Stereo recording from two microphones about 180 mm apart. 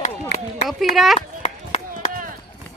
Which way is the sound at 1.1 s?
35° left (ahead or behind).